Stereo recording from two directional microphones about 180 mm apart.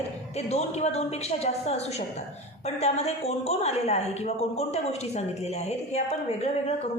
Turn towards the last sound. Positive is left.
turn(degrees=35)  # may be behind; listen again after turning